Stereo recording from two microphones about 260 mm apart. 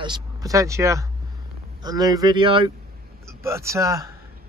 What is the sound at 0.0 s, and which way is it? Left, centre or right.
A man's voice, centre.